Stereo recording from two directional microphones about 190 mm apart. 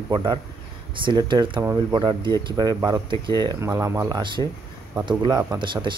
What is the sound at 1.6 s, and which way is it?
Speech, 10° right (ahead or behind).